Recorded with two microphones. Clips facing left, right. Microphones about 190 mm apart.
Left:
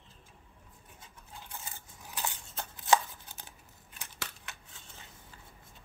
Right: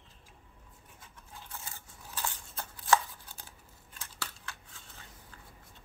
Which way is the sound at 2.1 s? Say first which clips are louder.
Even; 20° left (ahead or behind).